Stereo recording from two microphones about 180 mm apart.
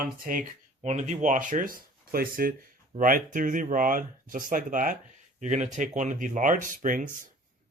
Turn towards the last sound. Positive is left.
turn(degrees=-45)  # may be behind; listen again after turning